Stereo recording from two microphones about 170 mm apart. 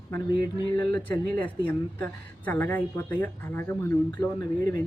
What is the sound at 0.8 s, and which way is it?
Speech, 80° right.